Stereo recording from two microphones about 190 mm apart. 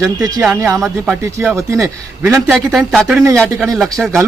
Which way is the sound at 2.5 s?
Centre (ahead or behind).